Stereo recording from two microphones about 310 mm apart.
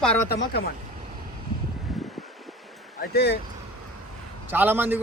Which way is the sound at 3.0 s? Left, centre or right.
Left.